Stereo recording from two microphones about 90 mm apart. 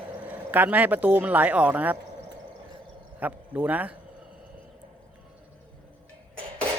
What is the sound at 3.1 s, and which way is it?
Speech, 20° right (ahead or behind).